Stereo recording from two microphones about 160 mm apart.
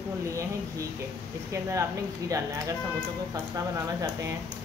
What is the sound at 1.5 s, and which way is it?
Speech, 20° right (ahead or behind).